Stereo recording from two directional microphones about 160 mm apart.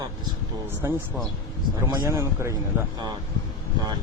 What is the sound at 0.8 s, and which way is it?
Speech, 15° right (ahead or behind).